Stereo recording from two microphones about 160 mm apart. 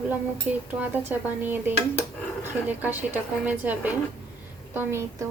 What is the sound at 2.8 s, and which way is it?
Speech, 10° right (ahead or behind).